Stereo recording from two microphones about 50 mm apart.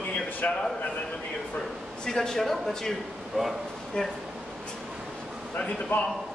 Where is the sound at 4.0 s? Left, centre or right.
Centre.